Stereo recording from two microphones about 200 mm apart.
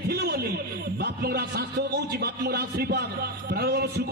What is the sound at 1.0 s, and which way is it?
A man's voice, 50° right (ahead or behind).